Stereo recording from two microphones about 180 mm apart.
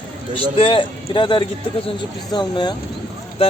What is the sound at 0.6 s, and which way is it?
A man's voice, 30° left (ahead or behind).